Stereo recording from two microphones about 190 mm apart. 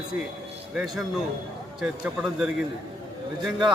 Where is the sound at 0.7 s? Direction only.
Centre (ahead or behind).